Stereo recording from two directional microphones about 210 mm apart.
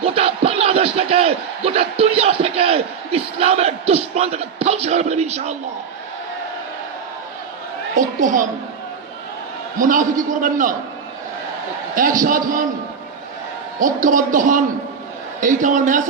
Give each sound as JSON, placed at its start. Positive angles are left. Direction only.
{"t": 0.0, "sound": "a sound", "side_deg": -30}
{"t": 8.2, "sound": "a man's voice", "side_deg": -40}
{"t": 9.7, "sound": "a man's voice", "side_deg": -40}
{"t": 11.9, "sound": "a man's voice", "side_deg": -40}
{"t": 13.7, "sound": "a man's voice", "side_deg": -40}